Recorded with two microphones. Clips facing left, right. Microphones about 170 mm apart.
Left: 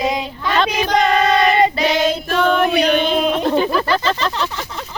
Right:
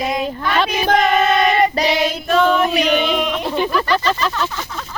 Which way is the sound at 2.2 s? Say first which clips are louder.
Right 5 dB; 55° left (ahead or behind).